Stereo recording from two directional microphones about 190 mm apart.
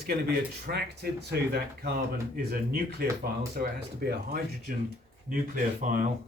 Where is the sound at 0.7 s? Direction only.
55° right (ahead or behind).